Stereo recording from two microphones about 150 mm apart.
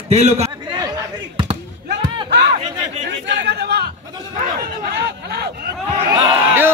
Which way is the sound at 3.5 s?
90° right.